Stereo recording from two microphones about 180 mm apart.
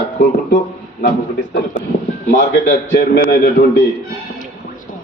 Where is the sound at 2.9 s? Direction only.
65° left (ahead or behind).